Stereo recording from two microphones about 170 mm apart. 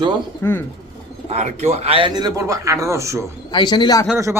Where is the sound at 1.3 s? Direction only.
40° right (ahead or behind); by 3.2 s 15° right (ahead or behind).